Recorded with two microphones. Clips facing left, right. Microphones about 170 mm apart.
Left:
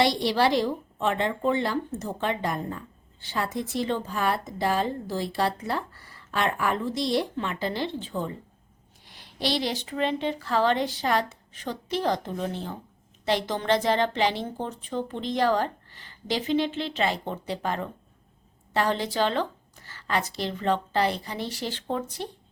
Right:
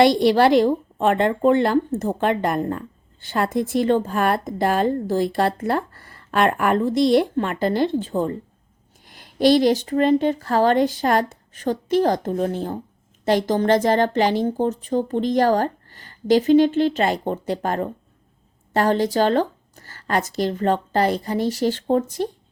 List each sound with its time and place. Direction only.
0.0 s a woman's voice: 50° right (ahead or behind)